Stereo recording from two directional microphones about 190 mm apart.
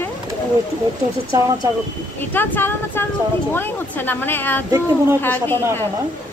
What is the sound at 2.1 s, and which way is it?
Speech, 10° left (ahead or behind).